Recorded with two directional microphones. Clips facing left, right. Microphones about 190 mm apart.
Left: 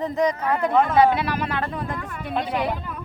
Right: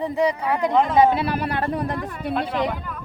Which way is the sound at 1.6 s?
35° right (ahead or behind).